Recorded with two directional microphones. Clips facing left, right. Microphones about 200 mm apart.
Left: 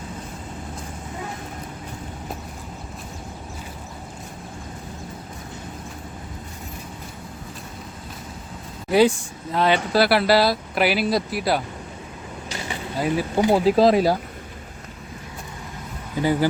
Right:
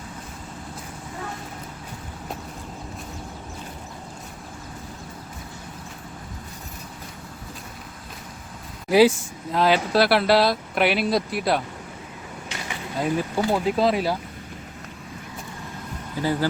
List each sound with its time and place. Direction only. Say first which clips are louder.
8.9 s speech: right 1 dB; centre (ahead or behind)
13.3 s speech: left 9 dB; 25° left (ahead or behind)
16.2 s speech: left 3 dB; 15° left (ahead or behind)